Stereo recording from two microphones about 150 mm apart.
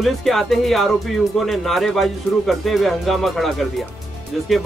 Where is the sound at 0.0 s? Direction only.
Centre (ahead or behind).